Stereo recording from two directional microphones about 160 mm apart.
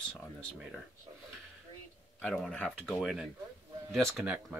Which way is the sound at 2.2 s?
5° left (ahead or behind).